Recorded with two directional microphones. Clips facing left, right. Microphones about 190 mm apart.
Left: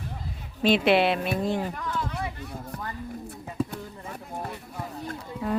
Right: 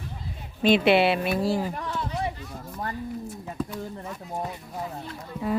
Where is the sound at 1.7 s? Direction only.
30° right (ahead or behind).